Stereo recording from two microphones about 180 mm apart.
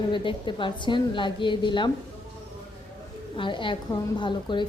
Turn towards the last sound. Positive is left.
turn(degrees=25)  # may be behind; listen again after turning